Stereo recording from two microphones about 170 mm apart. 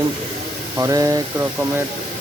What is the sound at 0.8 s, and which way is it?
Speech, 20° right (ahead or behind).